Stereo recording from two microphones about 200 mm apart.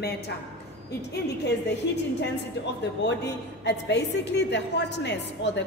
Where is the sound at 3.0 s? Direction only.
60° left (ahead or behind).